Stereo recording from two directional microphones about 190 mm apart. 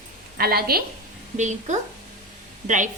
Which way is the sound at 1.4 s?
40° right (ahead or behind).